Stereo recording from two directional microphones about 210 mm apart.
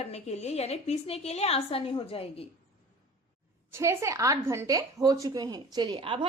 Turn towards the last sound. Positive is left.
turn(degrees=-25)  # may be behind; listen again after turning